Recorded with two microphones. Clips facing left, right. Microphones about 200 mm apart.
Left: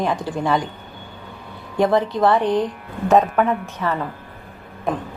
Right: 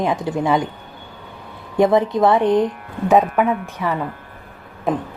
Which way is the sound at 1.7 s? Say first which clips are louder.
Right 3 dB; 20° right (ahead or behind).